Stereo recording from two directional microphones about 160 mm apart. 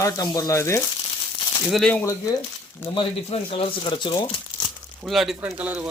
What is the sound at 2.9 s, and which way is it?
Speech, 35° left (ahead or behind).